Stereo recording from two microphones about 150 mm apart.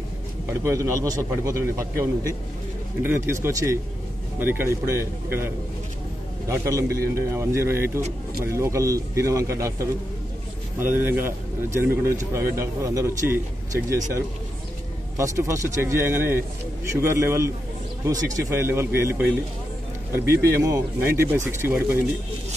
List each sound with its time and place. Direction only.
0.5 s speech: 20° right (ahead or behind)
3.0 s speech: 15° right (ahead or behind)
6.5 s speech: 20° right (ahead or behind)
10.8 s speech: 15° right (ahead or behind)
15.1 s speech: 20° right (ahead or behind)